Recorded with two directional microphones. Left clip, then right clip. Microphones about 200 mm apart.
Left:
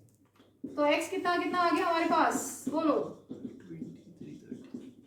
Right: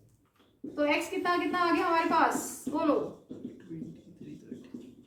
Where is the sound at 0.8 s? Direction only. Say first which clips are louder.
Left 1 dB; 20° left (ahead or behind).